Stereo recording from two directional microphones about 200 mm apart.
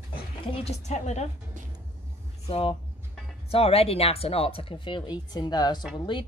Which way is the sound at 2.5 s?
30° left (ahead or behind).